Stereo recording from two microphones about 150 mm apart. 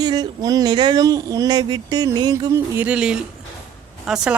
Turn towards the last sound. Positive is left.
turn(degrees=-5)  # may be behind; listen again after turning